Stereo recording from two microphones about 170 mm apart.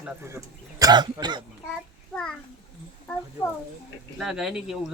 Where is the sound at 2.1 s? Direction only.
5° left (ahead or behind).